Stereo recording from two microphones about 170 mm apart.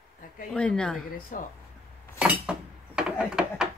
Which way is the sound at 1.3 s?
50° left (ahead or behind).